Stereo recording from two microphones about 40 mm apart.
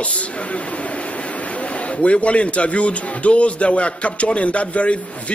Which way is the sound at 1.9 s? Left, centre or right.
Left.